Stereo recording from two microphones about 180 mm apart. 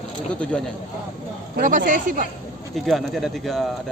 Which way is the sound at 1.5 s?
45° right (ahead or behind).